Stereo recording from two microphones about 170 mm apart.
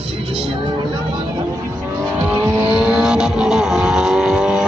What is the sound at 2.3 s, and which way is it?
Vehicle, 5° right (ahead or behind).